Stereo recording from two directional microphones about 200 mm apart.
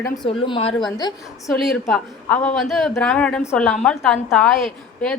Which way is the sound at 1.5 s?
Centre (ahead or behind).